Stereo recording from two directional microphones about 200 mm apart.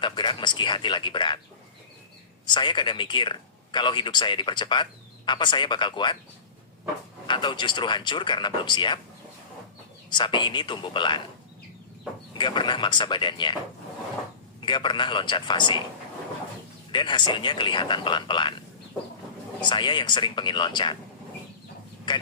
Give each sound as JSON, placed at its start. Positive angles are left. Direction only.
{"t": 0.0, "sound": "speech", "side_deg": 25}
{"t": 2.5, "sound": "speech", "side_deg": 25}
{"t": 7.3, "sound": "speech", "side_deg": 25}
{"t": 10.1, "sound": "speech", "side_deg": 25}
{"t": 12.4, "sound": "speech", "side_deg": 25}
{"t": 14.6, "sound": "speech", "side_deg": 25}
{"t": 16.9, "sound": "speech", "side_deg": 25}
{"t": 19.6, "sound": "speech", "side_deg": 25}
{"t": 22.1, "sound": "speech", "side_deg": 25}